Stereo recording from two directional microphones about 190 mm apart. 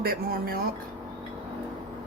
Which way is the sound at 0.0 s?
50° right (ahead or behind).